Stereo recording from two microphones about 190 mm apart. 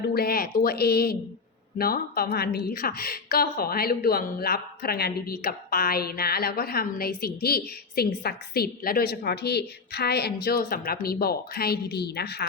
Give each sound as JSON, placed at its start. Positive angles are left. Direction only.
{"t": 0.1, "sound": "a woman's voice", "side_deg": 55}